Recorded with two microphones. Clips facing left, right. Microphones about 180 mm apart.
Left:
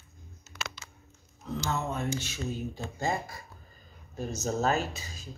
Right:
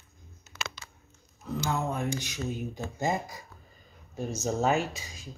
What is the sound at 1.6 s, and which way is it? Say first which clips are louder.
Speech: right 2 dB; 10° right (ahead or behind).